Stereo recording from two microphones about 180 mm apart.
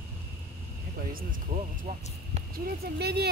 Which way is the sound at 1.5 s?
40° right (ahead or behind).